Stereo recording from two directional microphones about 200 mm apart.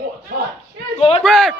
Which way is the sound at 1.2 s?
Centre (ahead or behind).